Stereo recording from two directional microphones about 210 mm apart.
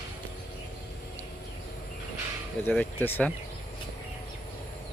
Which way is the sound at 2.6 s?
10° left (ahead or behind).